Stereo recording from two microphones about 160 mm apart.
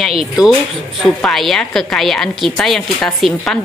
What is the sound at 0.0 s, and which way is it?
A woman's voice, 5° right (ahead or behind).